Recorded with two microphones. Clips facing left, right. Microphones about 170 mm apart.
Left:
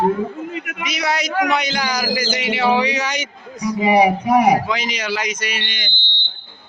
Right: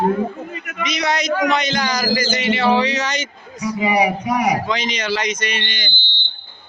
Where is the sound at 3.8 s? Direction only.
25° left (ahead or behind).